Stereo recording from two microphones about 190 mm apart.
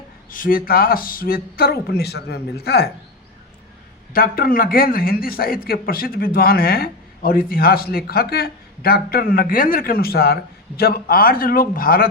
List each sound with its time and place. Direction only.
0.3 s a man's voice: 45° left (ahead or behind)
4.1 s a man's voice: 50° left (ahead or behind)